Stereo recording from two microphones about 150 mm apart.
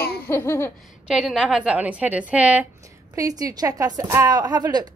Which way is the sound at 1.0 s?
5° right (ahead or behind).